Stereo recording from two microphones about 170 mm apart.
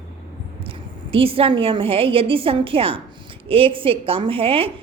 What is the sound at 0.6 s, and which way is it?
A woman's voice, 35° right (ahead or behind).